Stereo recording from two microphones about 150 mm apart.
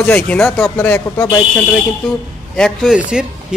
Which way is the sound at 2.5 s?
Centre (ahead or behind).